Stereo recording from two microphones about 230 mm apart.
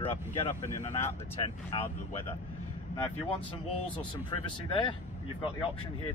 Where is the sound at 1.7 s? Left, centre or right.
Left.